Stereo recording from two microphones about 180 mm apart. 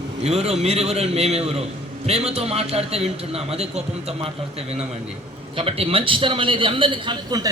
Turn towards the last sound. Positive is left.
turn(degrees=-20)  # may be behind; listen again after turning